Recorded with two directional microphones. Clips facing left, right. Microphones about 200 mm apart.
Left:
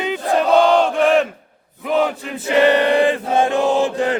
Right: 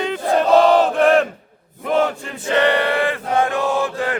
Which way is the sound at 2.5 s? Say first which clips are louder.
Left 3 dB; 15° left (ahead or behind).